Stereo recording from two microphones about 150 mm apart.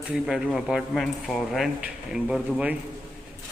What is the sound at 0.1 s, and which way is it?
Speech, 5° right (ahead or behind).